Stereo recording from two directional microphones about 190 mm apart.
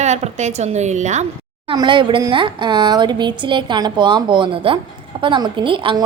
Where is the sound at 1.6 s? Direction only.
25° right (ahead or behind).